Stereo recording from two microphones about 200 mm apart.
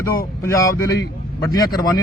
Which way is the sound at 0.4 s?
15° left (ahead or behind).